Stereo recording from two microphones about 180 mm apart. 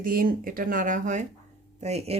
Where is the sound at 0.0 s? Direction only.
50° right (ahead or behind).